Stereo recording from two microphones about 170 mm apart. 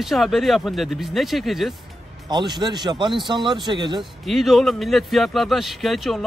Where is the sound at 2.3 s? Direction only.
25° right (ahead or behind).